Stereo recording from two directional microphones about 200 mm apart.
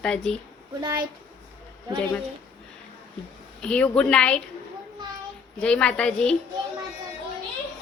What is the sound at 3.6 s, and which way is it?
Speech, 5° left (ahead or behind).